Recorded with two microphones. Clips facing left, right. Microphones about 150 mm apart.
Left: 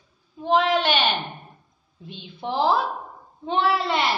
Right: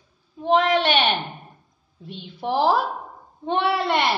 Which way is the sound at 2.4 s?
65° right (ahead or behind).